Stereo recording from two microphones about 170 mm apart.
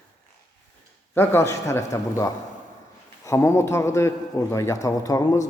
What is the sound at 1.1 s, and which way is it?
A man's voice, 15° left (ahead or behind).